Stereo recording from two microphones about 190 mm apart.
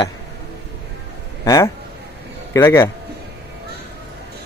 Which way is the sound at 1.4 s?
20° left (ahead or behind).